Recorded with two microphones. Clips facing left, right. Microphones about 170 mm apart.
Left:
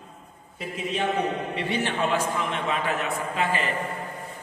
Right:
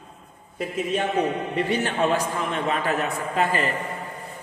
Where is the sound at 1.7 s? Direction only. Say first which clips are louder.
Right 2 dB; 45° right (ahead or behind).